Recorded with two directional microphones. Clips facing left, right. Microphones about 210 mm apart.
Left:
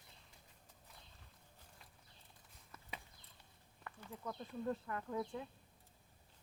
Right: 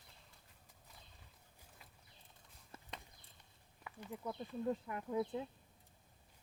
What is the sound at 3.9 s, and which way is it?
Speech, 10° right (ahead or behind).